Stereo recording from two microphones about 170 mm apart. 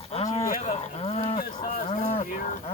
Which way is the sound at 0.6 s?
40° left (ahead or behind).